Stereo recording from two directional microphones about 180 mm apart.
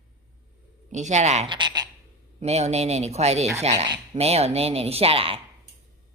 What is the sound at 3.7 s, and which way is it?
Speech, 25° right (ahead or behind).